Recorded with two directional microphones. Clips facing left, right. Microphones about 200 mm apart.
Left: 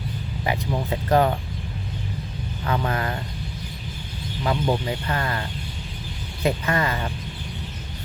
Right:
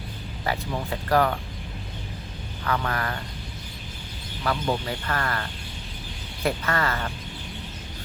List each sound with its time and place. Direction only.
0.4 s speech: 15° left (ahead or behind)
2.6 s speech: 20° left (ahead or behind)
4.4 s speech: 15° left (ahead or behind)